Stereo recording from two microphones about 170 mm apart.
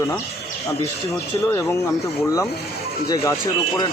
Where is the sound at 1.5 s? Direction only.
15° left (ahead or behind).